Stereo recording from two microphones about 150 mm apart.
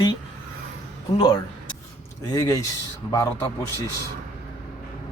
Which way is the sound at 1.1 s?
30° left (ahead or behind).